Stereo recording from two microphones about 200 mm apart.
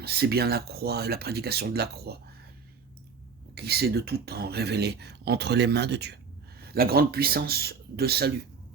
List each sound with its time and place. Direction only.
0.0 s speech: 55° right (ahead or behind)
3.5 s speech: 55° right (ahead or behind)